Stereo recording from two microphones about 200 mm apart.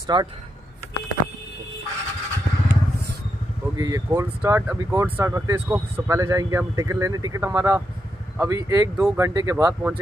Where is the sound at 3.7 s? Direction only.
15° right (ahead or behind).